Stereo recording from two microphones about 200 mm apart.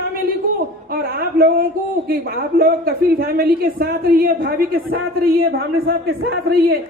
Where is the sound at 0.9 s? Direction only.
50° right (ahead or behind).